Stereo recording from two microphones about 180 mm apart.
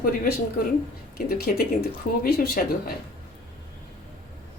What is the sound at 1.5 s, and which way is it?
Speech, 55° left (ahead or behind).